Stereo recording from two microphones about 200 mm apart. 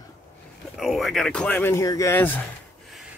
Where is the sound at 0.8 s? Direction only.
Centre (ahead or behind).